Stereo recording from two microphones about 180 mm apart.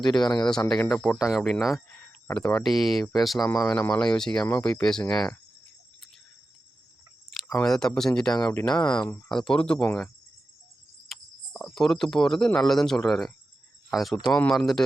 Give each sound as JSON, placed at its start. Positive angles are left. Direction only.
{"t": 0.2, "sound": "speech", "side_deg": 25}
{"t": 0.4, "sound": "speech", "side_deg": 5}
{"t": 3.7, "sound": "speech", "side_deg": 10}
{"t": 7.5, "sound": "speech", "side_deg": 5}
{"t": 11.1, "sound": "speech", "side_deg": 0}